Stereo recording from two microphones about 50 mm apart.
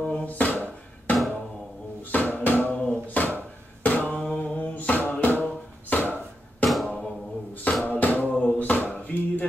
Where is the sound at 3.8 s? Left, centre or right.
Left.